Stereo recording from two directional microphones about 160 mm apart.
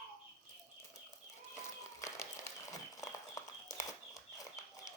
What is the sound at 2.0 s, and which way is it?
Applause, 20° left (ahead or behind).